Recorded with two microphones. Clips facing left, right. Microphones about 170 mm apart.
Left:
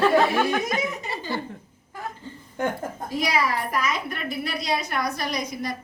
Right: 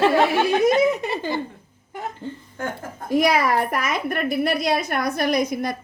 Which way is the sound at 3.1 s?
55° right (ahead or behind).